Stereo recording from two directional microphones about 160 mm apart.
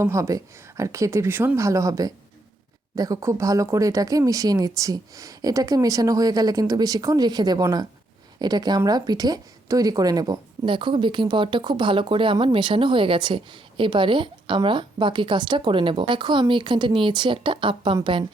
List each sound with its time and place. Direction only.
0.0 s speech: 20° right (ahead or behind)